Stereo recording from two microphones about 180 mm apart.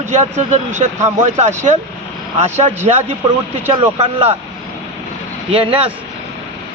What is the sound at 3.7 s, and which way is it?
Speech, 35° right (ahead or behind).